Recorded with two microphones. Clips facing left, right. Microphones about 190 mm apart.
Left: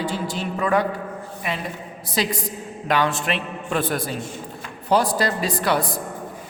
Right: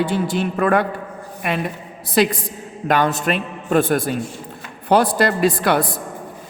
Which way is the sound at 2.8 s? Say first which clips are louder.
Right 4 dB; 45° right (ahead or behind).